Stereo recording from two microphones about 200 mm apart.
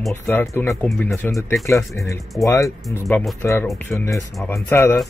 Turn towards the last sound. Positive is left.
turn(degrees=15)  # may be behind; listen again after turning